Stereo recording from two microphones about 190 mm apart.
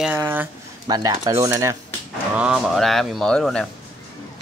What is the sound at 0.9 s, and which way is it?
Speech, 20° right (ahead or behind).